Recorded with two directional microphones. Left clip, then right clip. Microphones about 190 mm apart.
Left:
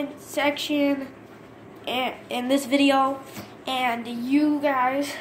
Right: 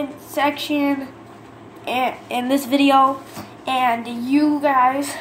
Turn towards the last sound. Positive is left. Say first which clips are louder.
# right 6 dB
turn(degrees=0)  # may be behind; listen again after turning